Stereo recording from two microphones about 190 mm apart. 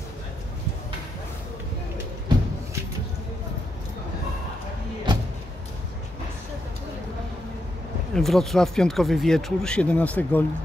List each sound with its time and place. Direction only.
5.1 s vehicle: 25° right (ahead or behind)
8.1 s speech: centre (ahead or behind)